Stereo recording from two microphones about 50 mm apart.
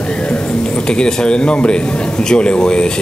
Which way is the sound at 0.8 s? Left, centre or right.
Centre.